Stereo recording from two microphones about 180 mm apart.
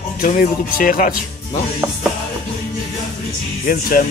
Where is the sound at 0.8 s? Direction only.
50° left (ahead or behind).